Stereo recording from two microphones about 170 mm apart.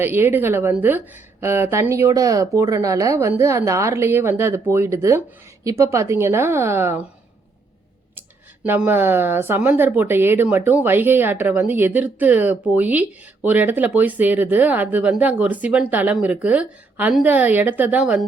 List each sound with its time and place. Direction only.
0.0 s speech: 10° right (ahead or behind)
8.6 s speech: 10° right (ahead or behind)